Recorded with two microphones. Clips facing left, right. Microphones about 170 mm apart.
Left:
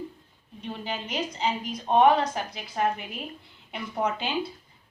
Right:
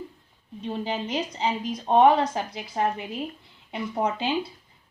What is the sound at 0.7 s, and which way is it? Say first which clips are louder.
A woman's voice: right 5 dB; 25° right (ahead or behind).